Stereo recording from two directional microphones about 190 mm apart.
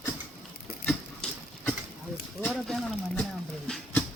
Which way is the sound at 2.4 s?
5° left (ahead or behind).